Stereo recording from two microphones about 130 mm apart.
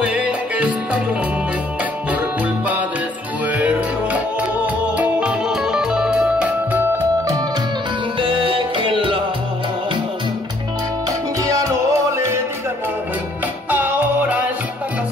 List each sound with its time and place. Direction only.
0.0 s music: 10° right (ahead or behind)
3.4 s music: 10° right (ahead or behind)
8.2 s music: 40° right (ahead or behind)
11.6 s music: 25° right (ahead or behind)
13.7 s music: 15° right (ahead or behind)